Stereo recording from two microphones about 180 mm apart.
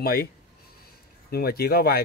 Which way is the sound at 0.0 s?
55° left (ahead or behind).